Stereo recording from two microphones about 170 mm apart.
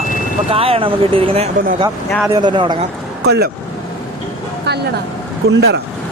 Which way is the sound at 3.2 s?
75° right (ahead or behind).